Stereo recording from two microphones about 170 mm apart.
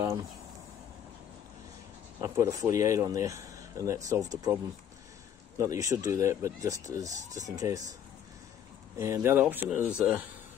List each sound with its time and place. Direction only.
2.1 s speech: 15° right (ahead or behind)
5.6 s speech: 20° right (ahead or behind)
8.9 s speech: 15° right (ahead or behind)